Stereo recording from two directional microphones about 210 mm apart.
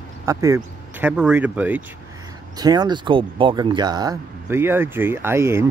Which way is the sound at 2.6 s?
20° right (ahead or behind).